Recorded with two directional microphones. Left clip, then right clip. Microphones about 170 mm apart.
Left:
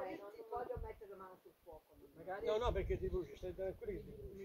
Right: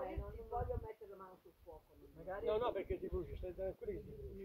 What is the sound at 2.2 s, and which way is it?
Speech, 35° right (ahead or behind).